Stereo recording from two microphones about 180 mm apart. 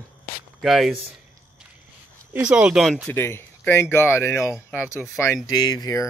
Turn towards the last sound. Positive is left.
turn(degrees=20)  # may be behind; listen again after turning